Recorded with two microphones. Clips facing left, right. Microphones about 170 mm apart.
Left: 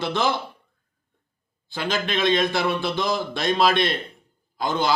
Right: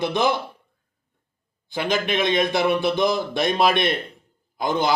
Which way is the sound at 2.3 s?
20° right (ahead or behind).